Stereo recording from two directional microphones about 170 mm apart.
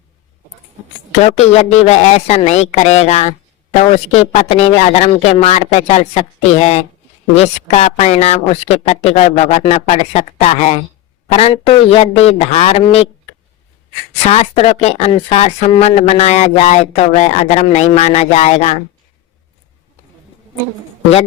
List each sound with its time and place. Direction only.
1.2 s speech: 40° left (ahead or behind)
14.3 s speech: 35° left (ahead or behind)